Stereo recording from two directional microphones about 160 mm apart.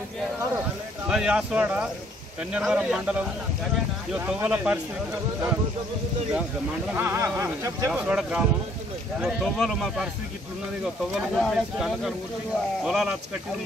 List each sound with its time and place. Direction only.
1.0 s speech: 5° right (ahead or behind)
7.0 s speech: 15° right (ahead or behind)
8.1 s speech: 5° right (ahead or behind)
11.1 s speech: centre (ahead or behind)